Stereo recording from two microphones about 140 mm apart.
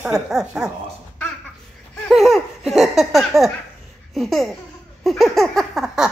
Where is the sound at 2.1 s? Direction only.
Centre (ahead or behind).